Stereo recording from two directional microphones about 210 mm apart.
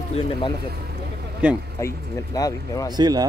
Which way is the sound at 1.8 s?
15° left (ahead or behind).